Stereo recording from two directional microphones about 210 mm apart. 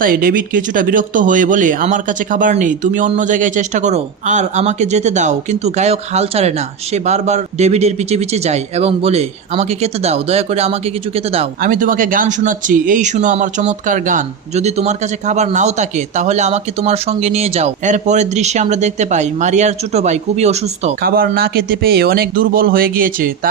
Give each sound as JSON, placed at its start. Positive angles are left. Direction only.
{"t": 0.0, "sound": "speech", "side_deg": -45}
{"t": 11.6, "sound": "speech", "side_deg": -40}
{"t": 21.0, "sound": "speech", "side_deg": -45}